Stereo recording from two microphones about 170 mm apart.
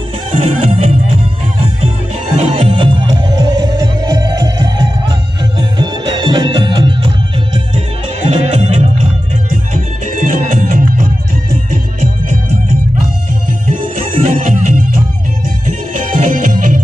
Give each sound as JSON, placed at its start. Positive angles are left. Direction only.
{"t": 0.3, "sound": "music", "side_deg": -35}
{"t": 2.3, "sound": "music", "side_deg": -45}
{"t": 2.7, "sound": "music", "side_deg": -30}
{"t": 8.3, "sound": "music", "side_deg": -35}
{"t": 9.5, "sound": "music", "side_deg": -50}
{"t": 14.2, "sound": "music", "side_deg": -45}
{"t": 15.6, "sound": "music", "side_deg": -45}